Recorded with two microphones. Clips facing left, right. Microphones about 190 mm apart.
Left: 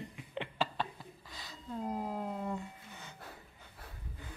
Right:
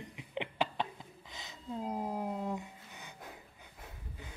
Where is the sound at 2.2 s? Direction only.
5° right (ahead or behind).